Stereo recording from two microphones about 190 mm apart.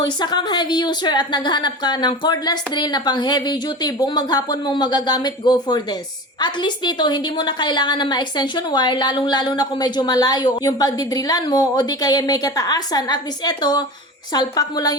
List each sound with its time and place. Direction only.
0.0 s a woman's voice: 25° left (ahead or behind)